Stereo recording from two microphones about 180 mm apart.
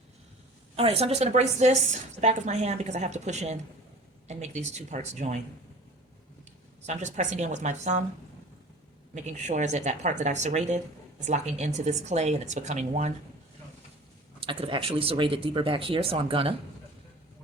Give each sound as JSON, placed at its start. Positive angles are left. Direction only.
{"t": 0.8, "sound": "a woman's voice", "side_deg": -35}
{"t": 6.8, "sound": "a woman's voice", "side_deg": -40}
{"t": 9.1, "sound": "a woman's voice", "side_deg": -40}
{"t": 14.4, "sound": "speech", "side_deg": -30}